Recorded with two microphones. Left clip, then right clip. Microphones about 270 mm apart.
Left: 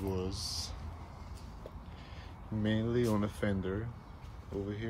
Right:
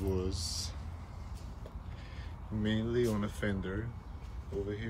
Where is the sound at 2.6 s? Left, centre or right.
Left.